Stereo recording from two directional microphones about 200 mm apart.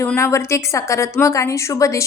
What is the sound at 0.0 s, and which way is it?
A woman's voice, 15° left (ahead or behind).